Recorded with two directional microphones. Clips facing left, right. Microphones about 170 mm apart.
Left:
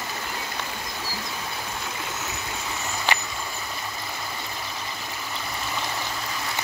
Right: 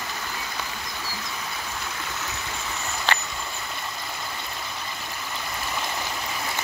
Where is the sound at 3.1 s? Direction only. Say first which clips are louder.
Even; 15° left (ahead or behind).